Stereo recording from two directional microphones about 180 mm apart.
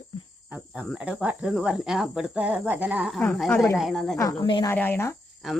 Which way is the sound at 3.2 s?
5° left (ahead or behind).